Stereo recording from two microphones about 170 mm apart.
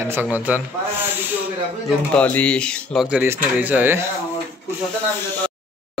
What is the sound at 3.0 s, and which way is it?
Speech, 10° right (ahead or behind).